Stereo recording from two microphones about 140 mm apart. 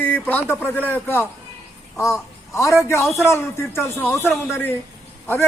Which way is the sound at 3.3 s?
20° left (ahead or behind).